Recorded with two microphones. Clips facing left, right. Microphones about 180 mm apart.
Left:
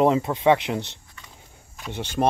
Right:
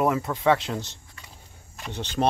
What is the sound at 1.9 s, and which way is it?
Speech, 10° left (ahead or behind).